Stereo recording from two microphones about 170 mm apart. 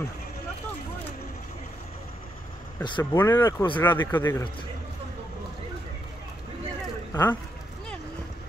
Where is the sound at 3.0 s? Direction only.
15° left (ahead or behind).